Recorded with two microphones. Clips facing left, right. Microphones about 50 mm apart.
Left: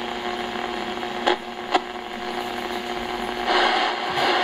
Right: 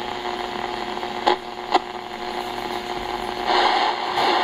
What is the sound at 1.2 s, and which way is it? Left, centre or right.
Radio, centre.